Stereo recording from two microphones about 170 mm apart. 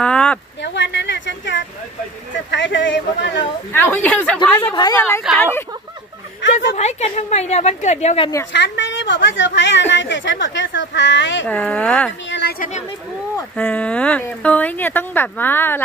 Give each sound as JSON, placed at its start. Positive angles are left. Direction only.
{"t": 0.0, "sound": "a sound", "side_deg": 5}
{"t": 0.6, "sound": "a sound", "side_deg": 90}
{"t": 2.5, "sound": "a woman's voice", "side_deg": 90}
{"t": 3.7, "sound": "speech", "side_deg": 10}
{"t": 4.7, "sound": "a woman's voice", "side_deg": 25}
{"t": 5.4, "sound": "speech", "side_deg": 15}
{"t": 6.5, "sound": "a woman's voice", "side_deg": 45}
{"t": 8.5, "sound": "a woman's voice", "side_deg": 90}
{"t": 11.4, "sound": "speech", "side_deg": 10}
{"t": 12.3, "sound": "a woman's voice", "side_deg": 90}
{"t": 12.5, "sound": "speech", "side_deg": 45}
{"t": 13.6, "sound": "speech", "side_deg": 10}